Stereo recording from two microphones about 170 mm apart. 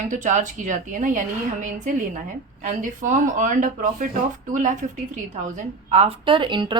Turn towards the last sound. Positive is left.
turn(degrees=-25)  # may be behind; listen again after turning